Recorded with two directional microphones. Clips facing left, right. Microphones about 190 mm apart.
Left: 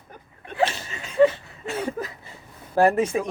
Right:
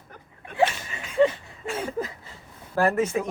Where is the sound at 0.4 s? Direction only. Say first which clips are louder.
Right 1 dB; 30° left (ahead or behind).